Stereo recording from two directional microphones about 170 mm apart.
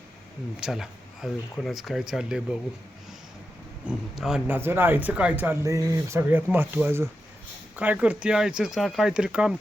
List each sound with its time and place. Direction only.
0.6 s speech: centre (ahead or behind)
3.8 s speech: 5° right (ahead or behind)